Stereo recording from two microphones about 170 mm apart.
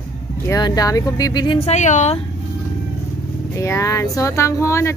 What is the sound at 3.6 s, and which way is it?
Speech, 15° left (ahead or behind).